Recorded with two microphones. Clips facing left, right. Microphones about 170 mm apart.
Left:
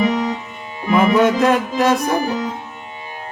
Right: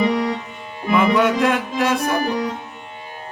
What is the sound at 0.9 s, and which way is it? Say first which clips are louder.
Speech: left 3 dB; 40° left (ahead or behind).